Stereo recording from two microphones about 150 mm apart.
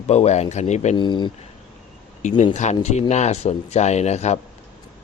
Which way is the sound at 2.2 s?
55° left (ahead or behind).